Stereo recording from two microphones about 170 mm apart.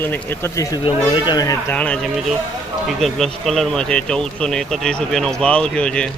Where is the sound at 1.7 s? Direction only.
5° left (ahead or behind).